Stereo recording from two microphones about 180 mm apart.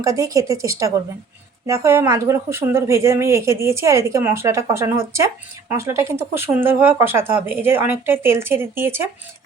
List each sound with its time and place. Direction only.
0.0 s speech: 20° right (ahead or behind)